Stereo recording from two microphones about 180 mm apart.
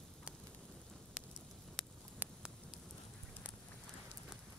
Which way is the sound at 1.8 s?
Centre (ahead or behind).